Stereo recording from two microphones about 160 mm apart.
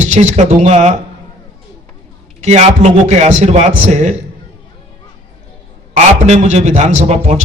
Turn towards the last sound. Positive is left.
turn(degrees=-45)  # may be behind; listen again after turning